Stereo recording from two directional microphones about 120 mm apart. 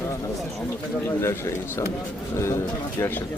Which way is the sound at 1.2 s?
25° left (ahead or behind).